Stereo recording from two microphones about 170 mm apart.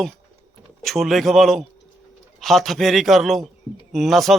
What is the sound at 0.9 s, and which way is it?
A man's voice, centre (ahead or behind).